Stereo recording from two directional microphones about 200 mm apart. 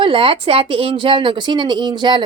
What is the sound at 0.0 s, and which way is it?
Speech, 25° right (ahead or behind).